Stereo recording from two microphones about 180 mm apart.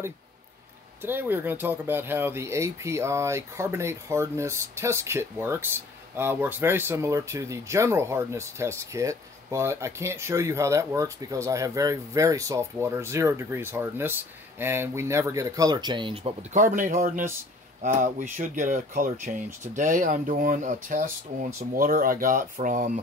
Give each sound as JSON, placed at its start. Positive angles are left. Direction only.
{"t": 1.0, "sound": "speech", "side_deg": -10}
{"t": 16.5, "sound": "speech", "side_deg": -45}